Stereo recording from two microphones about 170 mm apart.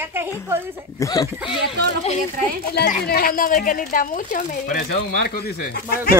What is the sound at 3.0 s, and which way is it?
Speech, 65° left (ahead or behind).